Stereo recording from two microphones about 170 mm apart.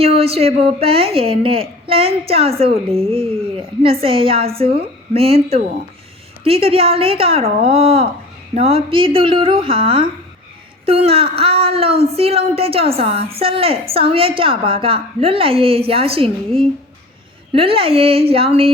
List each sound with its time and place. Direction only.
0.0 s a woman's voice: 35° right (ahead or behind)
17.5 s a woman's voice: 35° right (ahead or behind)